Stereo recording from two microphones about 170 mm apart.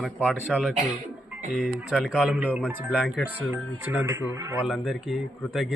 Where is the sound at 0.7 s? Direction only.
45° right (ahead or behind).